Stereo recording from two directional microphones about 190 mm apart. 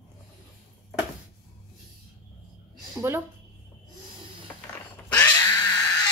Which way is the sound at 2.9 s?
10° right (ahead or behind).